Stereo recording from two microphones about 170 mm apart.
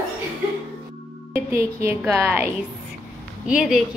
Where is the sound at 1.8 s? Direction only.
15° right (ahead or behind).